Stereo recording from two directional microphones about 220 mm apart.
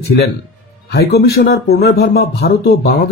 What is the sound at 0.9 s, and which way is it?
A man's voice, 50° left (ahead or behind).